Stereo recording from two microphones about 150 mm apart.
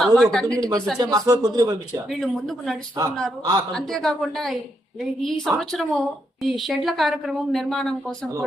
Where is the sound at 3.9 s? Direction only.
Centre (ahead or behind).